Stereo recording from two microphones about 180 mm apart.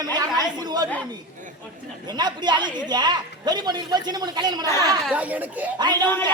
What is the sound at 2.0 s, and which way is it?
A man's voice, 25° right (ahead or behind).